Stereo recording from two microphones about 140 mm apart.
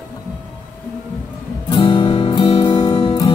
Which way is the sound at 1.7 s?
35° left (ahead or behind).